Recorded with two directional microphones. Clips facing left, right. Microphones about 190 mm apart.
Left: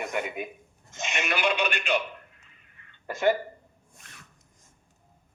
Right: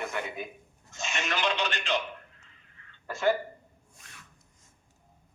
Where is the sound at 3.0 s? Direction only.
20° left (ahead or behind).